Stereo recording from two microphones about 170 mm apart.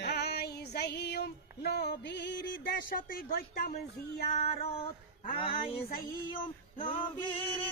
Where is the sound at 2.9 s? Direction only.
60° left (ahead or behind).